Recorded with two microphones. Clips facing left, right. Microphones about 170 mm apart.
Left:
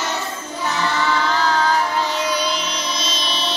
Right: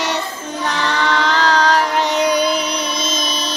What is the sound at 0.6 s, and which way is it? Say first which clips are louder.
Carnatic music: right 1 dB; 90° right.